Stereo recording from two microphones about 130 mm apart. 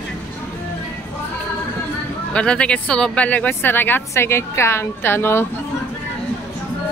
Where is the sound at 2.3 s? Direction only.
10° left (ahead or behind).